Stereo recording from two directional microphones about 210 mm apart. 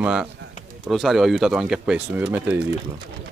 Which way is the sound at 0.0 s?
5° right (ahead or behind).